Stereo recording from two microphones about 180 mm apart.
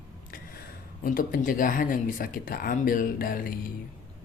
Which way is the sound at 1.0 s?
50° left (ahead or behind).